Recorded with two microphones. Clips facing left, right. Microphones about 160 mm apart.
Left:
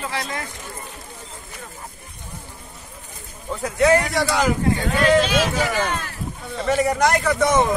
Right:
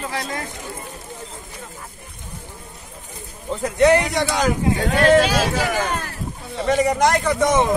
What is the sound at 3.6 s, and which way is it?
Speech, 25° right (ahead or behind).